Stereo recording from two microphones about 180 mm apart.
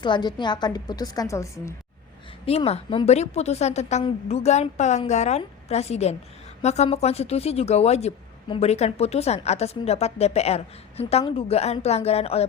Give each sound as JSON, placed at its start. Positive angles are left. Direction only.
{"t": 0.0, "sound": "a woman's voice", "side_deg": 25}
{"t": 2.5, "sound": "speech", "side_deg": 35}